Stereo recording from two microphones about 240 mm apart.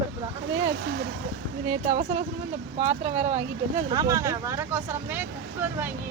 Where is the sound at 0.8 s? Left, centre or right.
Right.